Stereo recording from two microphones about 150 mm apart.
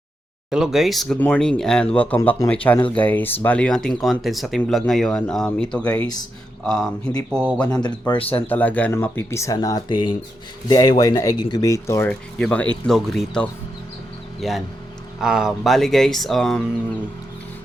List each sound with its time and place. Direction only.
0.5 s speech: 5° right (ahead or behind)
7.8 s speech: 30° left (ahead or behind)
8.4 s speech: 10° left (ahead or behind)